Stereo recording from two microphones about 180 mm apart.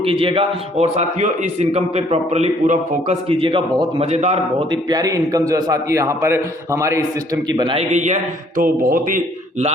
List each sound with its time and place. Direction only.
0.0 s a man's voice: 30° right (ahead or behind)
4.7 s a man's voice: 20° right (ahead or behind)
7.8 s a man's voice: 40° right (ahead or behind)